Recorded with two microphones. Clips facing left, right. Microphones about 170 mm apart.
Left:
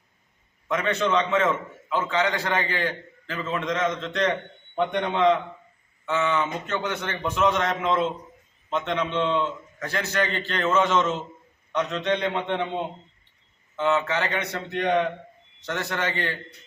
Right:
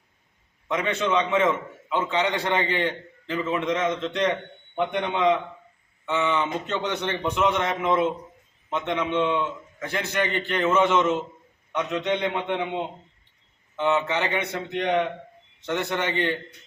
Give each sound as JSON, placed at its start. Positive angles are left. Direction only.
{"t": 0.7, "sound": "a man's voice", "side_deg": -15}